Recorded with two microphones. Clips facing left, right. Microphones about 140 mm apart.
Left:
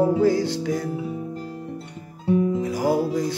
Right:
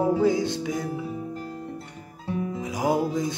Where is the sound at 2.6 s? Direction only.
20° right (ahead or behind).